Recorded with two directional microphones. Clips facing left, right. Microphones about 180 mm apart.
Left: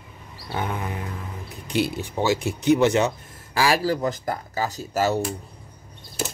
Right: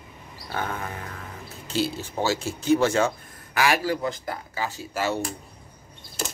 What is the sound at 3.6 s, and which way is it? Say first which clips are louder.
Speech: left 2 dB; 35° left (ahead or behind).